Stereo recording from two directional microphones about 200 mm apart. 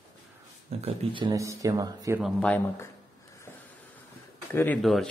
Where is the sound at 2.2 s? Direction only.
5° left (ahead or behind).